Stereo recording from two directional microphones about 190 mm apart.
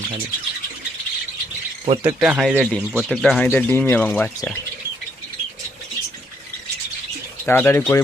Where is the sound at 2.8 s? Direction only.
10° right (ahead or behind).